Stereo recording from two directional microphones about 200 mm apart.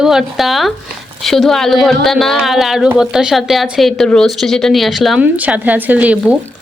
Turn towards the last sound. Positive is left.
turn(degrees=-5)  # may be behind; listen again after turning